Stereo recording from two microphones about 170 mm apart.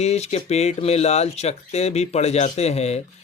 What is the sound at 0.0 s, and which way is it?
Speech, 40° left (ahead or behind).